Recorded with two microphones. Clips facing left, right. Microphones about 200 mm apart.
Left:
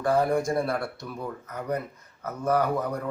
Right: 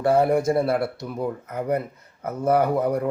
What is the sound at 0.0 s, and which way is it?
Speech, 25° right (ahead or behind).